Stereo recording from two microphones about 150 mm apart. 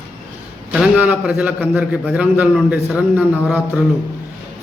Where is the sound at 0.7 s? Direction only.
10° right (ahead or behind).